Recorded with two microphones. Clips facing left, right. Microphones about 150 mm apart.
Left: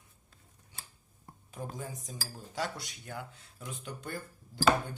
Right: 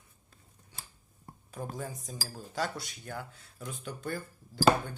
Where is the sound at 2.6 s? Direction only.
15° left (ahead or behind).